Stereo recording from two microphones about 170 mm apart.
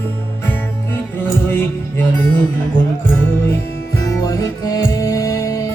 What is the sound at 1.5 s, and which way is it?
Music, 10° left (ahead or behind).